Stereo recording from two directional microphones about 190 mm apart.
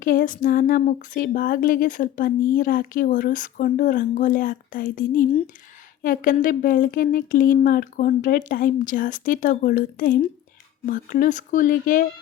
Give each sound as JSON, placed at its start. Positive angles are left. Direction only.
{"t": 0.0, "sound": "speech", "side_deg": 45}